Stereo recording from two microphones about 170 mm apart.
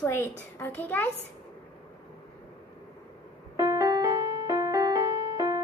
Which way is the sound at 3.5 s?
15° right (ahead or behind).